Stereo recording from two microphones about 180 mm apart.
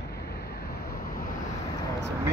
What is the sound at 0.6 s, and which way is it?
Vehicle, 60° left (ahead or behind).